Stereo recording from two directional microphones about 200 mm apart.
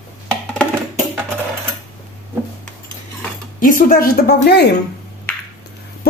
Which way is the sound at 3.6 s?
45° left (ahead or behind).